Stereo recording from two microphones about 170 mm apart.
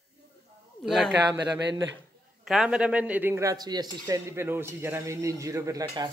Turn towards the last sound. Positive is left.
turn(degrees=-20)  # may be behind; listen again after turning